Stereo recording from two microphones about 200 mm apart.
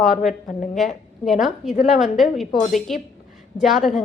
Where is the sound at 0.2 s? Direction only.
Centre (ahead or behind).